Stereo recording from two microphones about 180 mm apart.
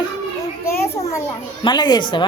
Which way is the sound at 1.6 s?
25° left (ahead or behind).